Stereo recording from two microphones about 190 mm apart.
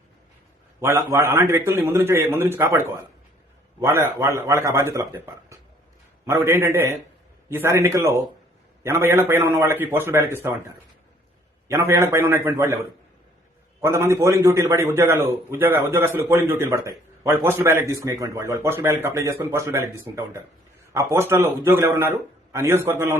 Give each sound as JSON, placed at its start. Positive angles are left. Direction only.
{"t": 0.8, "sound": "speech", "side_deg": -15}
{"t": 11.7, "sound": "speech", "side_deg": -15}